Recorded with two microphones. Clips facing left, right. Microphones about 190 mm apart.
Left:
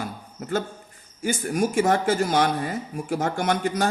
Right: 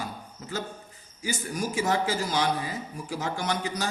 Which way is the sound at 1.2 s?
55° left (ahead or behind).